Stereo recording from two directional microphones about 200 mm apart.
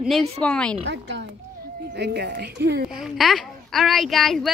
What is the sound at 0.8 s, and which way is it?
A woman's voice, 60° right (ahead or behind).